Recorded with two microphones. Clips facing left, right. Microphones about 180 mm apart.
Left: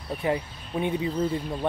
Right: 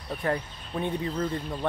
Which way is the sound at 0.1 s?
10° left (ahead or behind).